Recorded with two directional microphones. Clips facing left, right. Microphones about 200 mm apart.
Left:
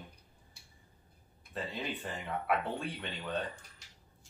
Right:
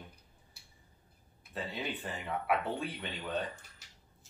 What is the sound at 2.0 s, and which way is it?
Speech, centre (ahead or behind).